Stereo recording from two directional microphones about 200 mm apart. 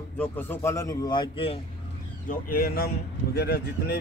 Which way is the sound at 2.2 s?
50° left (ahead or behind).